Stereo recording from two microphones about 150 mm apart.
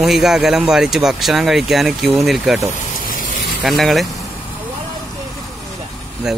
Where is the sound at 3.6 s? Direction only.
Centre (ahead or behind).